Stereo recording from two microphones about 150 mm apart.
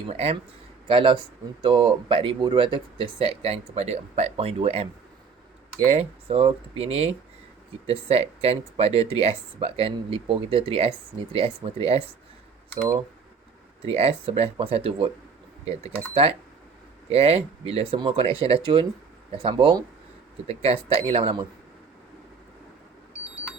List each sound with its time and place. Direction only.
0.1 s speech: 45° right (ahead or behind)
13.8 s speech: 40° right (ahead or behind)